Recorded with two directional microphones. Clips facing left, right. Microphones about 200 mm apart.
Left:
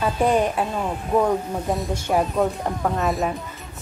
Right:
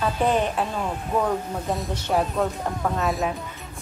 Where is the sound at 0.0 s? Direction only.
10° left (ahead or behind).